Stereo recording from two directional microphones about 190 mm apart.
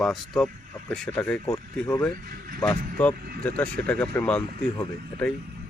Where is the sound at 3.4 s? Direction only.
5° left (ahead or behind).